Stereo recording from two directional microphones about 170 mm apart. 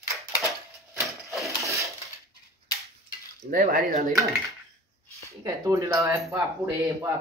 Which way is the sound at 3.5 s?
50° right (ahead or behind).